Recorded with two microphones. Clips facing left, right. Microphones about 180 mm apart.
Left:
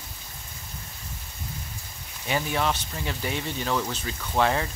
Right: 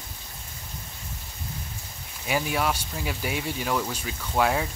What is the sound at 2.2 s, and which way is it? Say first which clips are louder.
Speech: even; 5° right (ahead or behind).